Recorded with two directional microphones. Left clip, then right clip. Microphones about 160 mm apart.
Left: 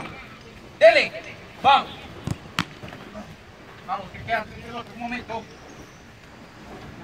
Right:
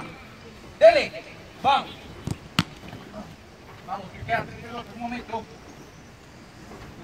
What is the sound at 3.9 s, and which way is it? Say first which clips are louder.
Speech: left 2 dB; 15° right (ahead or behind).